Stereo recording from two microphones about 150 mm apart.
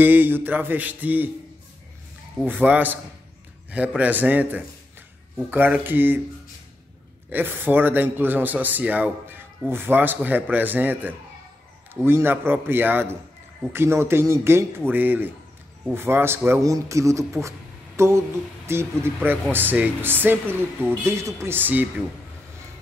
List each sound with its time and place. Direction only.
0.0 s a man's voice: 10° right (ahead or behind)
2.4 s a man's voice: 10° right (ahead or behind)
7.2 s a man's voice: 15° right (ahead or behind)